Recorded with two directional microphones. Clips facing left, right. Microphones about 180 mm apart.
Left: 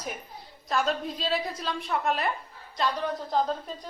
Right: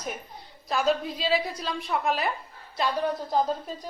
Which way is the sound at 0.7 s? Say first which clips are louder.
Right 2 dB; centre (ahead or behind).